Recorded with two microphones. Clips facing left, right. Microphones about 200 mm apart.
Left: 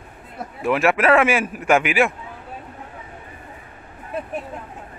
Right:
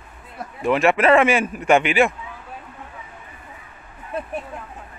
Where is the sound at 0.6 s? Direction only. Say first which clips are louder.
Right 1 dB; 5° left (ahead or behind).